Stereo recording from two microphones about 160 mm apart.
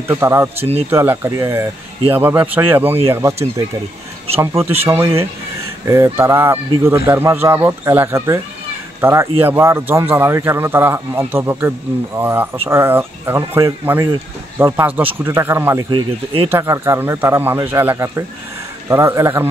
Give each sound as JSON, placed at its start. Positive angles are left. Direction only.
{"t": 0.1, "sound": "a man's voice", "side_deg": -15}
{"t": 0.6, "sound": "speech", "side_deg": -40}
{"t": 0.8, "sound": "a man's voice", "side_deg": -15}
{"t": 4.4, "sound": "a man's voice", "side_deg": -15}
{"t": 15.9, "sound": "speech", "side_deg": -30}
{"t": 16.4, "sound": "a man's voice", "side_deg": -15}